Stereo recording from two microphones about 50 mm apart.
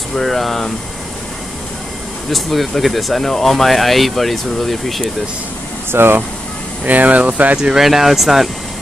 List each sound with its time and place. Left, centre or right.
0.1 s speech: centre
2.3 s speech: centre
5.9 s speech: right
6.9 s speech: right
7.5 s speech: centre